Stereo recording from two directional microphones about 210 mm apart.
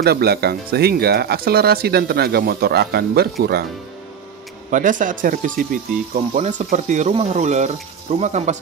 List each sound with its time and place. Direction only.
0.0 s speech: 50° right (ahead or behind)
4.6 s speech: 40° right (ahead or behind)